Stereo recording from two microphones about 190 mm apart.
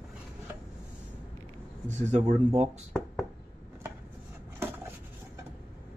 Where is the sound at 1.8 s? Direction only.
35° right (ahead or behind).